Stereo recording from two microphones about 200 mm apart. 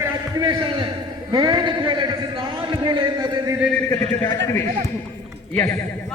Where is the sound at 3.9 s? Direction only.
10° left (ahead or behind).